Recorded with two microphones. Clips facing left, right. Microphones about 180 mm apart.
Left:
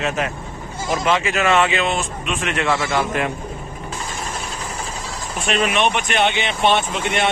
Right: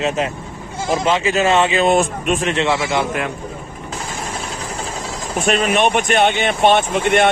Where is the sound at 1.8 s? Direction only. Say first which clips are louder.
Right 8 dB; 45° right (ahead or behind).